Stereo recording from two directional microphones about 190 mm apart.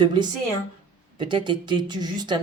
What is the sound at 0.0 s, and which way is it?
A woman's voice, 25° right (ahead or behind).